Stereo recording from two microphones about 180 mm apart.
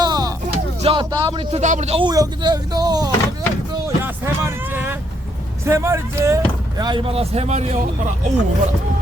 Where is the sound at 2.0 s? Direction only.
20° right (ahead or behind).